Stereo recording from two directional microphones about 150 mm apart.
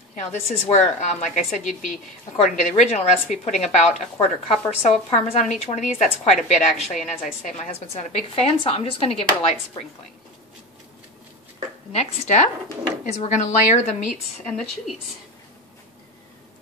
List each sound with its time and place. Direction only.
0.1 s a woman's voice: 50° left (ahead or behind)
11.9 s a woman's voice: 50° left (ahead or behind)